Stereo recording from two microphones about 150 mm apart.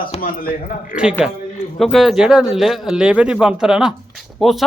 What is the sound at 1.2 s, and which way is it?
Speech, centre (ahead or behind).